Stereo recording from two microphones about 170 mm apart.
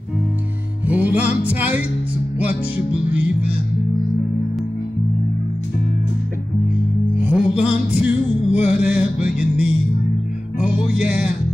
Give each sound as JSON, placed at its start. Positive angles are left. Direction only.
{"t": 0.8, "sound": "music", "side_deg": -10}
{"t": 7.2, "sound": "music", "side_deg": -10}